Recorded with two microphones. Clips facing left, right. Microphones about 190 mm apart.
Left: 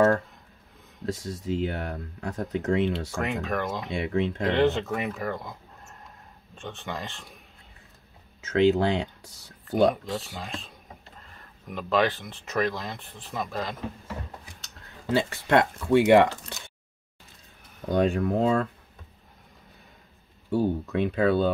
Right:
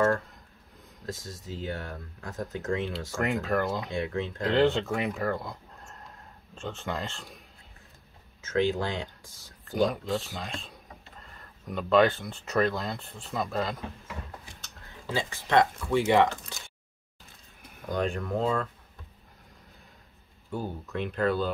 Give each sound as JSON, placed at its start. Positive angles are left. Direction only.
{"t": 1.1, "sound": "speech", "side_deg": 65}
{"t": 3.2, "sound": "speech", "side_deg": 0}
{"t": 3.9, "sound": "speech", "side_deg": 70}
{"t": 4.6, "sound": "speech", "side_deg": 0}
{"t": 6.5, "sound": "speech", "side_deg": 0}
{"t": 8.4, "sound": "speech", "side_deg": 70}
{"t": 10.0, "sound": "speech", "side_deg": 0}
{"t": 11.7, "sound": "speech", "side_deg": 0}
{"t": 15.0, "sound": "speech", "side_deg": 65}
{"t": 18.1, "sound": "speech", "side_deg": 70}
{"t": 20.5, "sound": "speech", "side_deg": 65}